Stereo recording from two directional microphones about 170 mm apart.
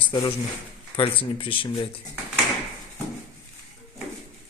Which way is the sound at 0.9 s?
30° left (ahead or behind).